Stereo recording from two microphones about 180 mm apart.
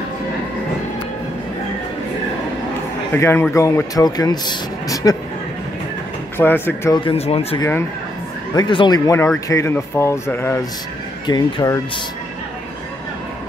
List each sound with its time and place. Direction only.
3.2 s speech: 15° left (ahead or behind)
6.3 s speech: 10° left (ahead or behind)
7.0 s speech: 30° left (ahead or behind)
8.5 s speech: 25° left (ahead or behind)